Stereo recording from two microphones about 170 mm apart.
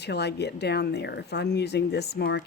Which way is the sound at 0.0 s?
80° left.